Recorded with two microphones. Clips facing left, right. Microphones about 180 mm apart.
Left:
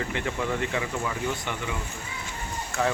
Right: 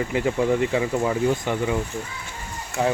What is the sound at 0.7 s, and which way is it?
Speech, 30° right (ahead or behind).